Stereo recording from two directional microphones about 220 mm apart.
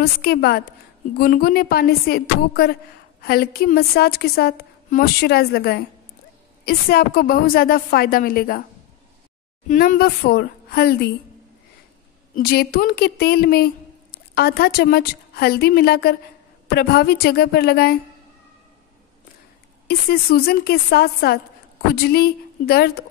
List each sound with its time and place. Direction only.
0.0 s a woman's voice: 45° left (ahead or behind)
9.7 s a woman's voice: 40° left (ahead or behind)
12.4 s a woman's voice: 45° left (ahead or behind)
19.9 s a woman's voice: 45° left (ahead or behind)